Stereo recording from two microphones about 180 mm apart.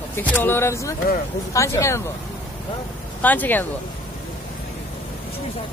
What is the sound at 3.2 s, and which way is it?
Speech, 10° left (ahead or behind).